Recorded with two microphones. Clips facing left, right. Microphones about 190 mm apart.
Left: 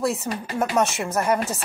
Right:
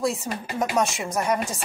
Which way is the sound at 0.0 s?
Centre (ahead or behind).